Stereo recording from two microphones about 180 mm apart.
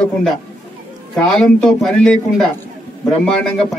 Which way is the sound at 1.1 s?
5° left (ahead or behind).